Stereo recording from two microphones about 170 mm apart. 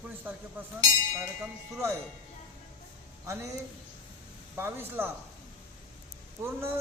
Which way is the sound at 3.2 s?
15° right (ahead or behind).